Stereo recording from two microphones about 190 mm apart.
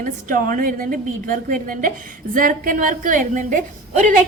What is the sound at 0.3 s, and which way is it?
A woman's voice, 45° right (ahead or behind).